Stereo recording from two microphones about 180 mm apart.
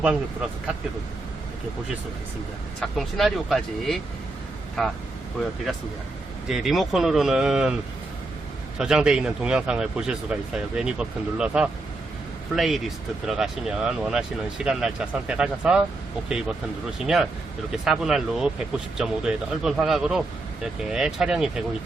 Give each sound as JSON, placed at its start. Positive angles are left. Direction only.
{"t": 2.8, "sound": "speech", "side_deg": 0}
{"t": 8.8, "sound": "speech", "side_deg": -5}